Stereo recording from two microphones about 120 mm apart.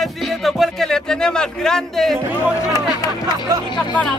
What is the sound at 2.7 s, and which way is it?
Speech, 30° left (ahead or behind).